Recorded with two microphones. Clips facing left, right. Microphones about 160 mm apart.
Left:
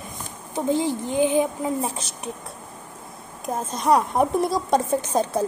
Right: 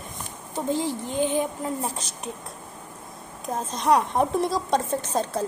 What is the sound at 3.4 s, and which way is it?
Speech, 5° left (ahead or behind).